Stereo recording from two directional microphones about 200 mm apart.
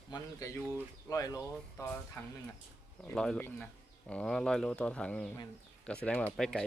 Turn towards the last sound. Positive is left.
turn(degrees=5)  # may be behind; listen again after turning